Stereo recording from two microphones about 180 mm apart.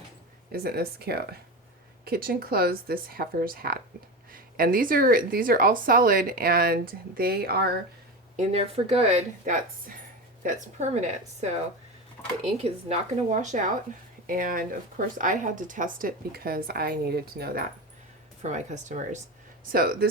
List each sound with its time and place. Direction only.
0.5 s a woman's voice: 60° right (ahead or behind)
8.4 s a woman's voice: 35° right (ahead or behind); by 17.6 s 60° right (ahead or behind)
18.4 s speech: 40° right (ahead or behind)
19.7 s speech: 55° right (ahead or behind)